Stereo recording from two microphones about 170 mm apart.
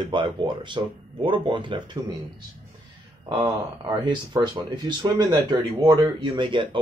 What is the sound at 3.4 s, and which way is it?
Speech, 25° right (ahead or behind).